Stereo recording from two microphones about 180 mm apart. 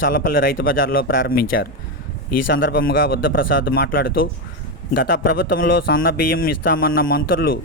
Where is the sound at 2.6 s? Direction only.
55° left (ahead or behind).